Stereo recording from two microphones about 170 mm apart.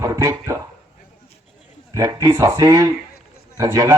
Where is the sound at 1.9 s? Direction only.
20° right (ahead or behind).